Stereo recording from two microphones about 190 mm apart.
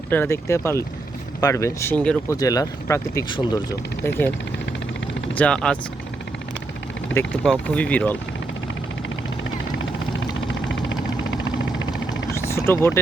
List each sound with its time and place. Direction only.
0.1 s speech: 15° left (ahead or behind)
5.4 s speech: 5° left (ahead or behind)
7.1 s speech: 10° left (ahead or behind)
10.4 s vehicle: 75° left (ahead or behind)
12.5 s vehicle: 15° left (ahead or behind)